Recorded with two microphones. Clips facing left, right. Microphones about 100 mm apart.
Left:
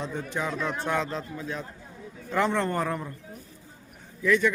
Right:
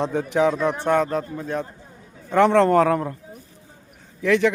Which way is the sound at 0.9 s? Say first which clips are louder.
Right 8 dB; 50° right (ahead or behind).